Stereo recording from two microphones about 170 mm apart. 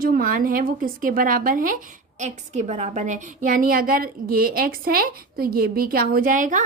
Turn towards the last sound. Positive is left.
turn(degrees=-50)  # may be behind; listen again after turning